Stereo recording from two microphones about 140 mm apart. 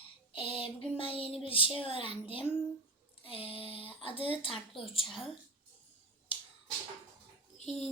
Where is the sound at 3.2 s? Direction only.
40° left (ahead or behind).